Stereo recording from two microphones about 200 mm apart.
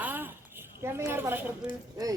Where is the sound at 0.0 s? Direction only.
10° right (ahead or behind).